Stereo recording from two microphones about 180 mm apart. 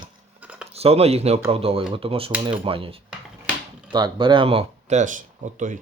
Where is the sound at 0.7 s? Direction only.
35° right (ahead or behind).